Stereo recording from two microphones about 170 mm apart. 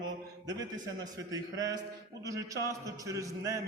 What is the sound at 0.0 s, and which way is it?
A man's voice, 20° right (ahead or behind).